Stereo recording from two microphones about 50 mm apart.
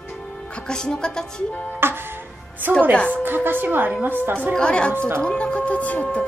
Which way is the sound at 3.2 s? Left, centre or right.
Right.